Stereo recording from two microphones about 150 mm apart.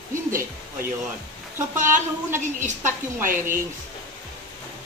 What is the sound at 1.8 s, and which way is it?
A woman's voice, 60° right (ahead or behind).